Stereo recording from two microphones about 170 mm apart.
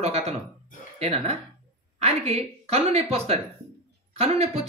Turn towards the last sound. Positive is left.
turn(degrees=-35)  # may be behind; listen again after turning